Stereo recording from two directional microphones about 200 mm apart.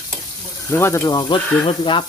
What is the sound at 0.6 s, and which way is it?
Cutlery, 15° left (ahead or behind).